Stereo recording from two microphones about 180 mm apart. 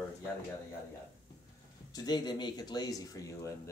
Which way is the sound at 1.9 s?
20° left (ahead or behind).